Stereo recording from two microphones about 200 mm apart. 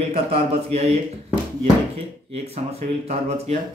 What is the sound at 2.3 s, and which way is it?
Speech, 30° right (ahead or behind).